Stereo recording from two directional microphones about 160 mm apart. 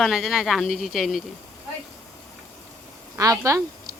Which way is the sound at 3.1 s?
20° right (ahead or behind).